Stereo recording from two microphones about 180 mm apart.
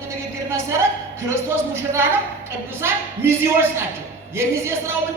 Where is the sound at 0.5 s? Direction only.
15° right (ahead or behind).